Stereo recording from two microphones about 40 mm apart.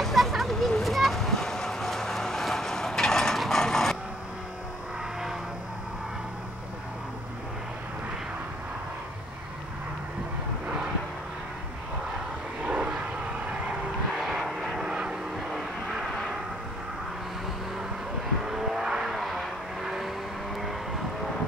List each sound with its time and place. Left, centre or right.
0.0 s a sound: centre
12.6 s vehicle: right
14.4 s vehicle: centre
14.8 s vehicle: right
18.4 s vehicle: centre
19.0 s vehicle: centre